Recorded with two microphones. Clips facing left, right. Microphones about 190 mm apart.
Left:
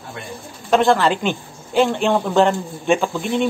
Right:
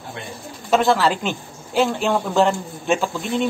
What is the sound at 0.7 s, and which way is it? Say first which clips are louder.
A woman's voice: left 2 dB; centre (ahead or behind).